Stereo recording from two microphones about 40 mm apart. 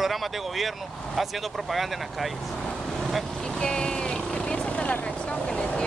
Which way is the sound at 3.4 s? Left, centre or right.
Centre.